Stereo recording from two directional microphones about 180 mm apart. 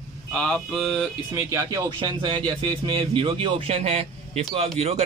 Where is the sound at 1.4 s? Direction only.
20° right (ahead or behind); by 4.4 s 35° right (ahead or behind).